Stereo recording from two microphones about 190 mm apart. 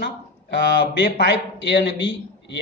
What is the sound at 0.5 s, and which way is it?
A man's voice, 60° left (ahead or behind).